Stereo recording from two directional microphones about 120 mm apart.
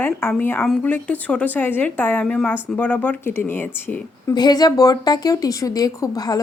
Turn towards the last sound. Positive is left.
turn(degrees=30)  # may be behind; listen again after turning